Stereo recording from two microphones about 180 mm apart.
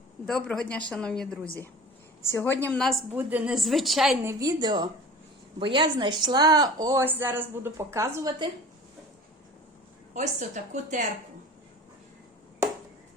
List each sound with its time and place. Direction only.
0.3 s a woman's voice: 5° left (ahead or behind)
3.1 s a woman's voice: 10° right (ahead or behind)
4.1 s a woman's voice: 15° right (ahead or behind)
10.2 s a woman's voice: 40° right (ahead or behind)